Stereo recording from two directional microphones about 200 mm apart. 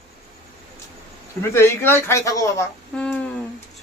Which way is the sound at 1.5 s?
10° left (ahead or behind).